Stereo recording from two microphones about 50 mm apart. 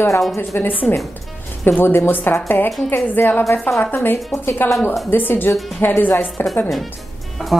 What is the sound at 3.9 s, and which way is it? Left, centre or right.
Speech, left.